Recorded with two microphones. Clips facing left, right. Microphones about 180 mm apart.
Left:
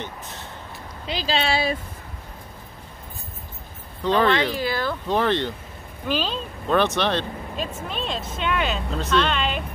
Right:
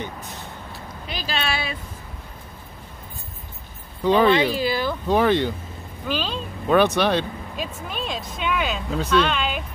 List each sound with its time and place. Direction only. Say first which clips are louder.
1.0 s speech: left 4 dB; 25° left (ahead or behind)
4.0 s speech: right 3 dB; 10° right (ahead or behind)